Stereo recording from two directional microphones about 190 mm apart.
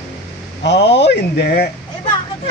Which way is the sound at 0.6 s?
65° left (ahead or behind).